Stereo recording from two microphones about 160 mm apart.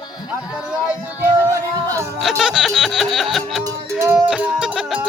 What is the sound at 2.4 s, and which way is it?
Music, 5° right (ahead or behind).